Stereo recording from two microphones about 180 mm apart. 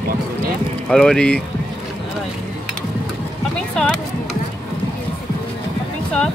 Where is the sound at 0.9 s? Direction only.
5° left (ahead or behind).